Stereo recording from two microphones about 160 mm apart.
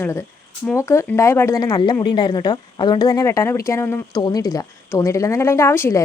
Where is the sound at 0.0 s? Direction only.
15° left (ahead or behind).